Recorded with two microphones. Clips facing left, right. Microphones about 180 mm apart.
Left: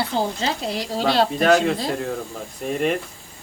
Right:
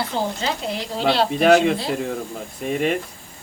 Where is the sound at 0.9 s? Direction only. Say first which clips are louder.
Even; 40° left (ahead or behind).